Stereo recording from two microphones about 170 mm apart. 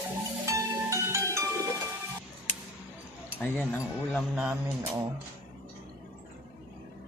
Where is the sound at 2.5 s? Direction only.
45° left (ahead or behind).